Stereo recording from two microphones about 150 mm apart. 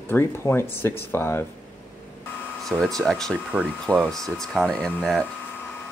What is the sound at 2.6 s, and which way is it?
Speech, 5° left (ahead or behind).